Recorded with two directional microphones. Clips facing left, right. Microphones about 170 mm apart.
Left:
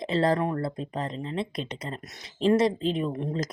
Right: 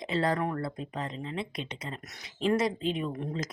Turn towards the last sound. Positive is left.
turn(degrees=30)  # may be behind; listen again after turning